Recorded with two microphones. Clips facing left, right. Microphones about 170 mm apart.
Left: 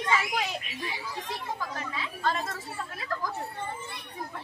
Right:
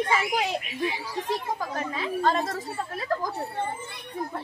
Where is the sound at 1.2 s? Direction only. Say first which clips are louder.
Right 8 dB; 35° right (ahead or behind).